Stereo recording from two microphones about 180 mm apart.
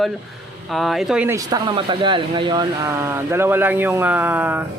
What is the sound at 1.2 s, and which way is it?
Speech, 15° right (ahead or behind).